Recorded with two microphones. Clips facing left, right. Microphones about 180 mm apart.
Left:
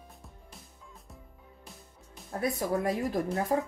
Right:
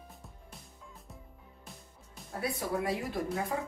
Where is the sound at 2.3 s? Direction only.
45° left (ahead or behind).